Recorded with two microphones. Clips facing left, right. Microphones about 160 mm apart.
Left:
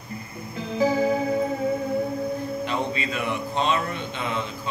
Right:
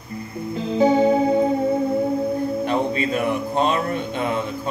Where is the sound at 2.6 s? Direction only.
45° right (ahead or behind).